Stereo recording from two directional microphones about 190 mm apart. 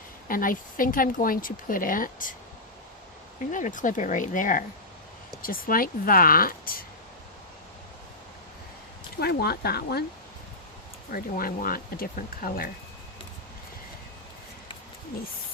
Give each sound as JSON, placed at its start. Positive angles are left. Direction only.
{"t": 0.3, "sound": "speech", "side_deg": 45}
{"t": 3.5, "sound": "speech", "side_deg": 45}
{"t": 9.2, "sound": "speech", "side_deg": 55}
{"t": 11.1, "sound": "speech", "side_deg": 50}